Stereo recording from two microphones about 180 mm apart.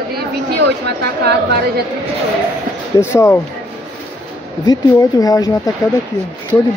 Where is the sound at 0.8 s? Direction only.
65° right (ahead or behind).